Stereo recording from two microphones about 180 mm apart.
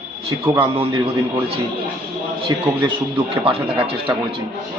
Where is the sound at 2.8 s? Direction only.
30° right (ahead or behind).